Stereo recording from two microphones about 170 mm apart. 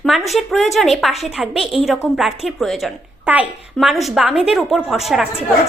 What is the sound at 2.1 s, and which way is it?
A woman's voice, centre (ahead or behind).